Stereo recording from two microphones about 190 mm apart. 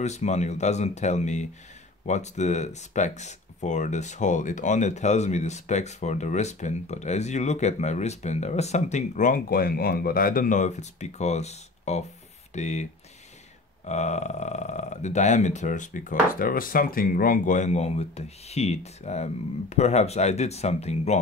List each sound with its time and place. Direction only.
0.0 s speech: 35° left (ahead or behind)
13.8 s speech: 35° left (ahead or behind)